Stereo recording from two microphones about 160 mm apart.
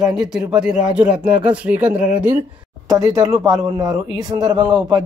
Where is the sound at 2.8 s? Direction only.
20° right (ahead or behind).